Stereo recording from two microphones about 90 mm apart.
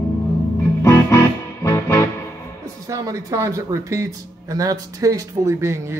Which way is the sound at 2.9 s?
35° right (ahead or behind).